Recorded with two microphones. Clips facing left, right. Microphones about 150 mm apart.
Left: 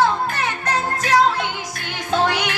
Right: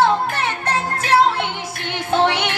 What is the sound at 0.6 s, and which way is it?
Music, 30° right (ahead or behind).